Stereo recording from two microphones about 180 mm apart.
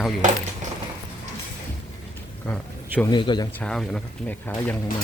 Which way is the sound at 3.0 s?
25° left (ahead or behind).